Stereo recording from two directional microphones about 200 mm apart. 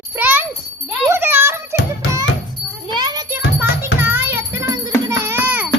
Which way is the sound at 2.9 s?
20° right (ahead or behind).